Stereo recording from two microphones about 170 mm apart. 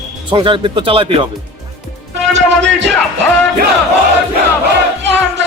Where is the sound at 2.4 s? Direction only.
90° right.